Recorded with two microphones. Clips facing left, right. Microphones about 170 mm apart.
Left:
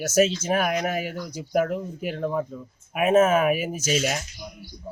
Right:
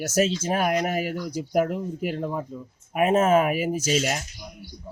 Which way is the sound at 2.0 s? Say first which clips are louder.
Left 3 dB; 10° right (ahead or behind).